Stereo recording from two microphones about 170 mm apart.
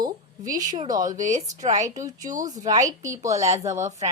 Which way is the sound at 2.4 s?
25° right (ahead or behind).